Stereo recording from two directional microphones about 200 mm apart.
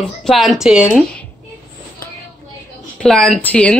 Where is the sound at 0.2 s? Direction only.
Centre (ahead or behind).